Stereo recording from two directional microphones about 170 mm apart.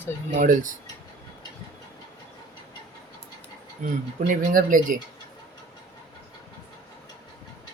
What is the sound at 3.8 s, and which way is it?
Speech, 50° right (ahead or behind).